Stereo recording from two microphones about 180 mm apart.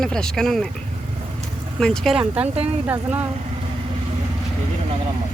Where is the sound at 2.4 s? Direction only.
35° right (ahead or behind).